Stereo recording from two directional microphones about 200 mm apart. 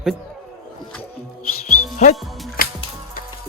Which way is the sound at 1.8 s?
35° left (ahead or behind).